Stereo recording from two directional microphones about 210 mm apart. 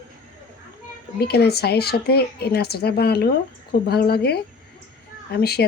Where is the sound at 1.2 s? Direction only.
50° left (ahead or behind).